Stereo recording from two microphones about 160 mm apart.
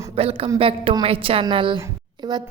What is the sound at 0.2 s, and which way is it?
A woman's voice, 35° right (ahead or behind).